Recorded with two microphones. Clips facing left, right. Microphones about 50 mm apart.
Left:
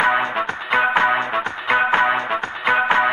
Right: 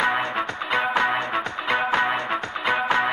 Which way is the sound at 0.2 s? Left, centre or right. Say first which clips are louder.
Left 3 dB; left.